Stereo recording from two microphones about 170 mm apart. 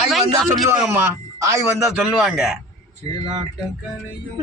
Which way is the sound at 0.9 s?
15° right (ahead or behind).